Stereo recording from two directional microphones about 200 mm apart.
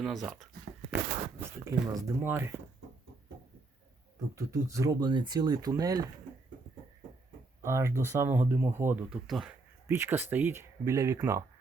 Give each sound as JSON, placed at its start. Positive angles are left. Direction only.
{"t": 0.0, "sound": "speech", "side_deg": 0}
{"t": 1.6, "sound": "speech", "side_deg": -15}
{"t": 4.4, "sound": "speech", "side_deg": -15}
{"t": 7.6, "sound": "speech", "side_deg": -15}
{"t": 9.2, "sound": "speech", "side_deg": 0}